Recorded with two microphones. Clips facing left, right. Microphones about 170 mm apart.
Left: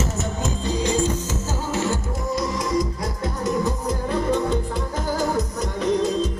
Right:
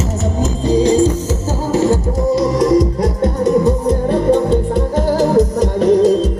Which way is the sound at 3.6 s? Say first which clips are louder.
Right 10 dB; 60° right (ahead or behind).